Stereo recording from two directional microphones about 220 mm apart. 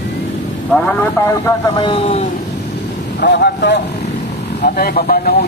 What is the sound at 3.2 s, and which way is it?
Speech, 50° left (ahead or behind).